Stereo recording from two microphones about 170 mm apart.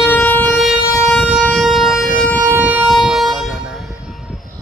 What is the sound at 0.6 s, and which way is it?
Vehicle, centre (ahead or behind).